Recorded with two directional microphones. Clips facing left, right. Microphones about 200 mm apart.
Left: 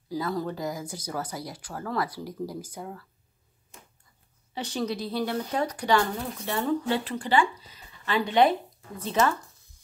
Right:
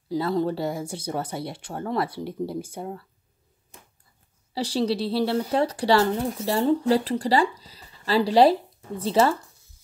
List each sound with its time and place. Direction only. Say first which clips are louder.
0.1 s speech: right 6 dB; 25° right (ahead or behind)
4.6 s speech: right 6 dB; 30° right (ahead or behind)